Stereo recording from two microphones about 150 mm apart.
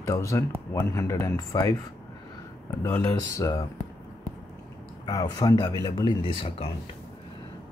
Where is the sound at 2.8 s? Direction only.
15° left (ahead or behind).